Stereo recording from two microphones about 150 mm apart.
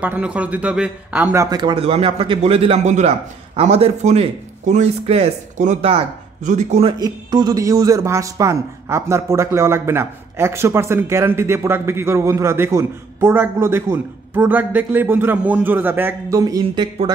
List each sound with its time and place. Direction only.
0.0 s speech: 10° right (ahead or behind); by 1.8 s 25° right (ahead or behind)
1.8 s a man's voice: 40° right (ahead or behind)
7.0 s a man's voice: 25° right (ahead or behind)